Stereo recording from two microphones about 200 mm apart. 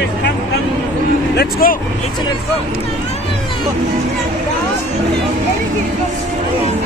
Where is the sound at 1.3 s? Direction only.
50° left (ahead or behind).